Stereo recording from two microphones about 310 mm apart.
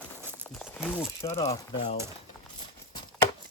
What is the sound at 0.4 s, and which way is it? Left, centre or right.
Speech, centre.